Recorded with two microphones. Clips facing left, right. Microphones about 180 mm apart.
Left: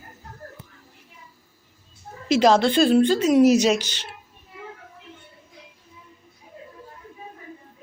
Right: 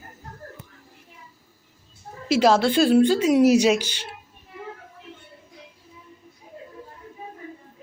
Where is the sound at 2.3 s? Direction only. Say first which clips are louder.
Left 1 dB; 5° right (ahead or behind).